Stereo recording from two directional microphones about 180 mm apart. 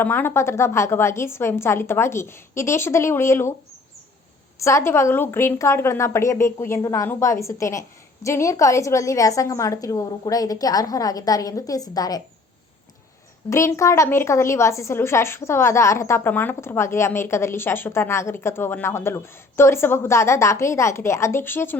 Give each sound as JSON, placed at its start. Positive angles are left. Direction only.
{"t": 0.0, "sound": "a woman's voice", "side_deg": 10}
{"t": 4.5, "sound": "a woman's voice", "side_deg": 15}
{"t": 13.5, "sound": "a woman's voice", "side_deg": 15}